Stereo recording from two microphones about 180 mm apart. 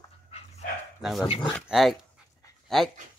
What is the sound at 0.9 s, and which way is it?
Dog, centre (ahead or behind).